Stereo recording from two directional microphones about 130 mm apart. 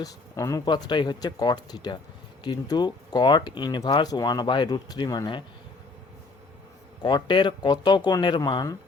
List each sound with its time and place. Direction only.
0.0 s speech: 25° left (ahead or behind)
7.0 s speech: 35° left (ahead or behind)